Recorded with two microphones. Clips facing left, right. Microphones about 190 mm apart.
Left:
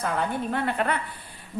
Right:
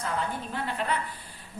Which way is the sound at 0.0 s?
60° left (ahead or behind).